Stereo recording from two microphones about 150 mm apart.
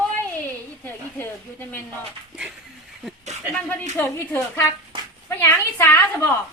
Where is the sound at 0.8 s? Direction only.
15° left (ahead or behind).